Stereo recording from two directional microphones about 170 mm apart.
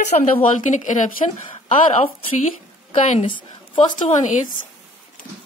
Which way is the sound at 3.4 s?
30° left (ahead or behind).